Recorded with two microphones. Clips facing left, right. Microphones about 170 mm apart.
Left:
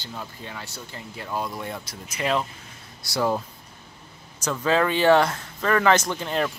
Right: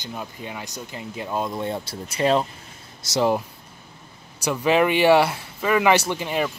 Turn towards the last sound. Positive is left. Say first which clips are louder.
# right 1 dB
turn(degrees=-5)  # may be behind; listen again after turning